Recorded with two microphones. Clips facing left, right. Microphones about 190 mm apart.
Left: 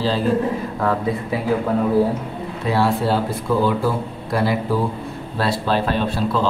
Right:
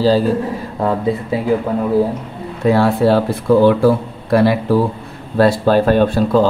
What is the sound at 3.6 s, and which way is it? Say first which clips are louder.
Speech: right 8 dB; 70° right (ahead or behind).